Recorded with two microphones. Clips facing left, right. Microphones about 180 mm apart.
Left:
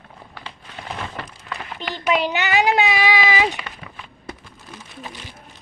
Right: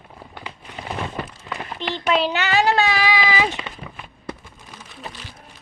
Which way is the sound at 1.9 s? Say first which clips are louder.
Even; 15° left (ahead or behind).